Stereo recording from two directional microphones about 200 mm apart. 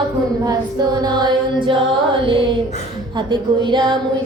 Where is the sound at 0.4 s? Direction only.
20° right (ahead or behind).